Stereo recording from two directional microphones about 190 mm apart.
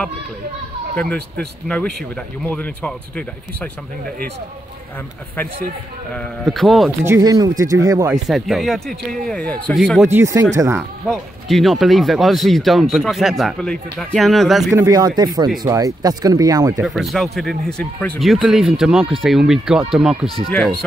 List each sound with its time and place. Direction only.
0.9 s speech: 5° left (ahead or behind)
6.1 s speech: centre (ahead or behind)
7.1 s speech: 20° right (ahead or behind)
8.1 s speech: centre (ahead or behind)
10.0 s speech: 15° right (ahead or behind)
10.8 s speech: centre (ahead or behind)
14.7 s speech: 15° right (ahead or behind)
16.8 s speech: centre (ahead or behind)